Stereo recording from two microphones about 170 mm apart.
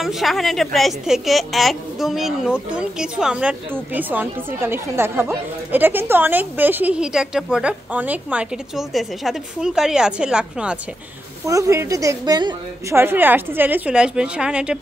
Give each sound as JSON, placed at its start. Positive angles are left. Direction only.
{"t": 0.0, "sound": "a woman's voice", "side_deg": 0}
{"t": 11.4, "sound": "a woman's voice", "side_deg": -20}
{"t": 12.9, "sound": "a woman's voice", "side_deg": -10}